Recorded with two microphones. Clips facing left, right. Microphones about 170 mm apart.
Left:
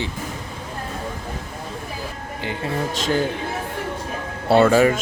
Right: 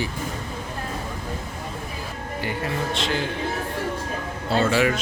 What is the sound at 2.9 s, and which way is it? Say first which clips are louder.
Speech: left 4 dB; 45° left (ahead or behind).